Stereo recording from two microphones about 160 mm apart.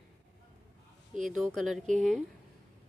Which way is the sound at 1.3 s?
Centre (ahead or behind).